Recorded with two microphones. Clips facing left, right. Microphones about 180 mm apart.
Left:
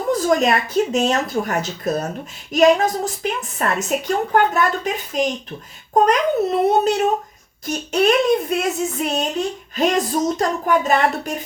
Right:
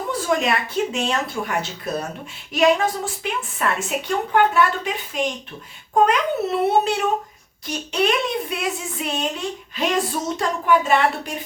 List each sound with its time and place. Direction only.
0.1 s a woman's voice: 40° left (ahead or behind)
6.7 s a sound: 40° left (ahead or behind)
9.7 s a woman's voice: 45° left (ahead or behind)